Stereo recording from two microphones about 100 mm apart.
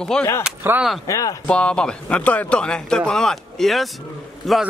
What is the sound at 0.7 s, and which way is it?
Speech, 25° right (ahead or behind).